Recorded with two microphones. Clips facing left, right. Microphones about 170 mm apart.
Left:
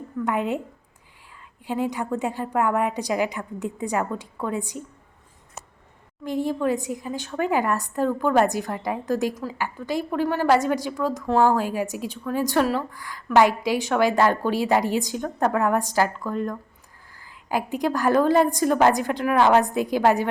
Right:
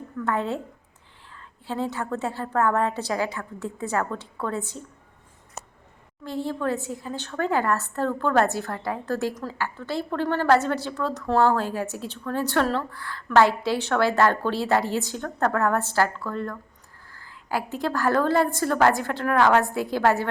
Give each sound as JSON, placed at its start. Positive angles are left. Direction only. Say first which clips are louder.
{"t": 0.2, "sound": "a woman's voice", "louder": "left 2 dB", "side_deg": 15}
{"t": 6.2, "sound": "a woman's voice", "louder": "left 3 dB", "side_deg": 15}